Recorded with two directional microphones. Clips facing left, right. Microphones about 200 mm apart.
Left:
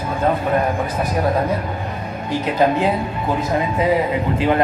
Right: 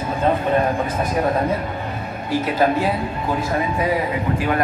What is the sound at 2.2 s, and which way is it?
Speech, 20° left (ahead or behind).